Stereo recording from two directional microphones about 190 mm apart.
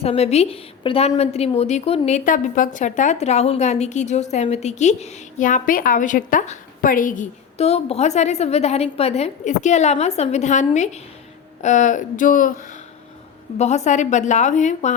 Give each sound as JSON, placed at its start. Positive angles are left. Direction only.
{"t": 0.0, "sound": "a woman's voice", "side_deg": 35}
{"t": 11.6, "sound": "a sound", "side_deg": 40}
{"t": 13.6, "sound": "a woman's voice", "side_deg": 35}